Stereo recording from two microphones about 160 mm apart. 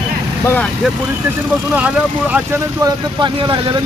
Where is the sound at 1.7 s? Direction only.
10° right (ahead or behind).